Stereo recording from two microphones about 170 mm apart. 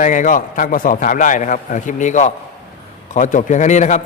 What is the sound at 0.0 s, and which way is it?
A man's voice, 50° left (ahead or behind).